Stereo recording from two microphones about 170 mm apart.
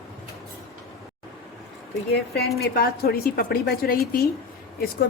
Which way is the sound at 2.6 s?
65° left (ahead or behind).